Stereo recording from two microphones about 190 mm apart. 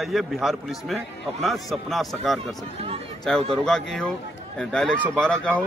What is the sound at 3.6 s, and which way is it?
Speech, 5° left (ahead or behind).